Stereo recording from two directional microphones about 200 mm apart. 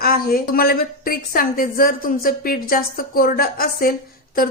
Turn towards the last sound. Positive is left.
turn(degrees=45)  # may be behind; listen again after turning